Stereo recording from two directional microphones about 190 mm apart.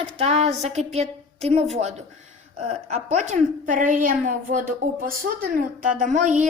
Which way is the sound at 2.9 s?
40° right (ahead or behind).